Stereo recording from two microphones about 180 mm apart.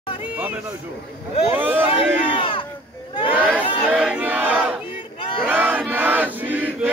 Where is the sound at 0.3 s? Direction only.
10° right (ahead or behind).